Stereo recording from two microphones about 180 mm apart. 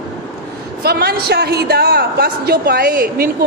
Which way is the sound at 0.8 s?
60° right (ahead or behind).